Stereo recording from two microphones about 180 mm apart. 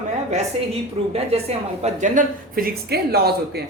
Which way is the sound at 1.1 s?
35° right (ahead or behind).